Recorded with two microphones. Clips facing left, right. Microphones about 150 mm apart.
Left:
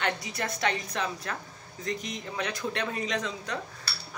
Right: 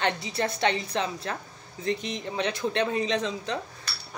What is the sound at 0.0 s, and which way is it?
Speech, 30° right (ahead or behind).